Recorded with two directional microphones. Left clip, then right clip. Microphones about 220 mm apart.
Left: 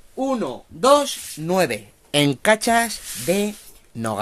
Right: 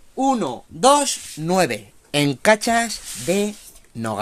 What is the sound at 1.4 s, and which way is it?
Speech, 15° right (ahead or behind).